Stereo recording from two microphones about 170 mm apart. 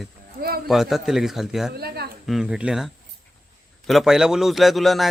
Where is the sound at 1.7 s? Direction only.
70° right (ahead or behind).